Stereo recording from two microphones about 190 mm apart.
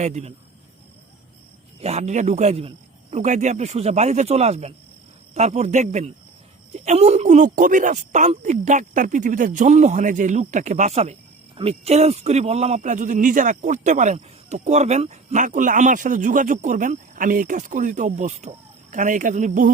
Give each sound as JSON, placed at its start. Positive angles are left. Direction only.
{"t": 0.0, "sound": "speech", "side_deg": -35}
{"t": 1.8, "sound": "speech", "side_deg": -35}